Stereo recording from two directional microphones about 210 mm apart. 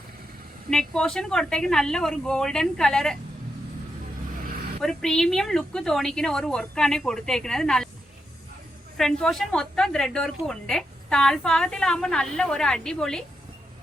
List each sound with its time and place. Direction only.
0.7 s a woman's voice: centre (ahead or behind)
4.8 s a woman's voice: centre (ahead or behind)
9.0 s a woman's voice: centre (ahead or behind)